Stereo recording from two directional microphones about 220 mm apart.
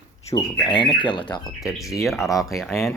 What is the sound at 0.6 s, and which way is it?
Speech, 20° left (ahead or behind).